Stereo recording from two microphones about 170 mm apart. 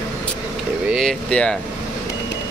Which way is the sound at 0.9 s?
5° left (ahead or behind).